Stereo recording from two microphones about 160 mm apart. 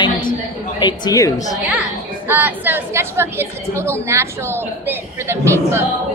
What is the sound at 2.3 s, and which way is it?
A woman's voice, 10° right (ahead or behind).